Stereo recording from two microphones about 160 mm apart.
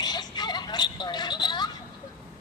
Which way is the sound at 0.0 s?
25° left (ahead or behind).